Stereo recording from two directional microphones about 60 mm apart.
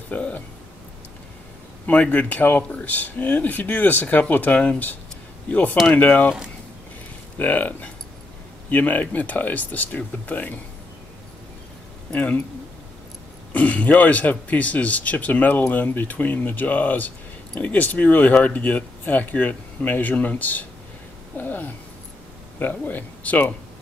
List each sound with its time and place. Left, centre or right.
0.1 s a sound: left
2.1 s speech: left
7.3 s speech: left
12.1 s speech: left
13.5 s speech: left